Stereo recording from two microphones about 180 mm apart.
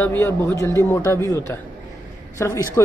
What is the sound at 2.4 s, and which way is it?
Speech, 15° left (ahead or behind).